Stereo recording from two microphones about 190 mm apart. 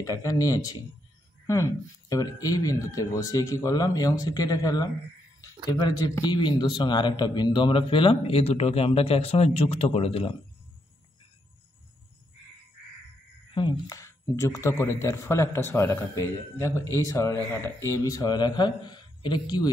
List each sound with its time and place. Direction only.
0.0 s a man's voice: 20° left (ahead or behind)
13.5 s a man's voice: 25° left (ahead or behind)